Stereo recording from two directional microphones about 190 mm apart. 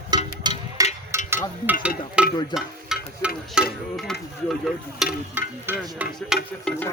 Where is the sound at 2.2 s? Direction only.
5° right (ahead or behind).